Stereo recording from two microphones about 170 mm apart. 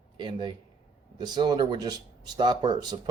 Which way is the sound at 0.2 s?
25° right (ahead or behind).